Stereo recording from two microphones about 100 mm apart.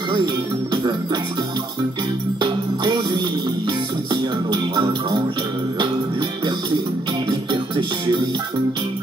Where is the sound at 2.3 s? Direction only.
50° right (ahead or behind).